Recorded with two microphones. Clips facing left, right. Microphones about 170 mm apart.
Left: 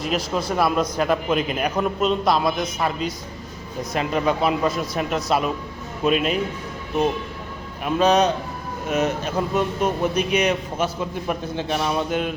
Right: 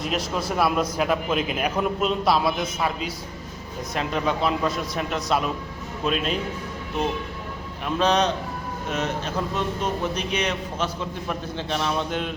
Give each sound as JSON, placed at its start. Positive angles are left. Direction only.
{"t": 0.0, "sound": "a man's voice", "side_deg": 0}
{"t": 7.9, "sound": "a man's voice", "side_deg": 10}